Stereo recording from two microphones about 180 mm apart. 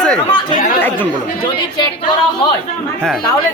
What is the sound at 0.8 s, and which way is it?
Speech, 10° left (ahead or behind).